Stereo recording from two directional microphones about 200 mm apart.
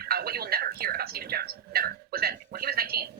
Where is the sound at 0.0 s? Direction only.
50° right (ahead or behind).